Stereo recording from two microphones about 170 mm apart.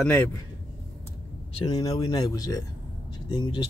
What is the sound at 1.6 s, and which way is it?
Speech, 25° left (ahead or behind).